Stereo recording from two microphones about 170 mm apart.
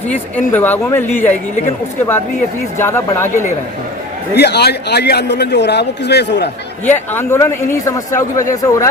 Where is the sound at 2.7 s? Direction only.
15° left (ahead or behind).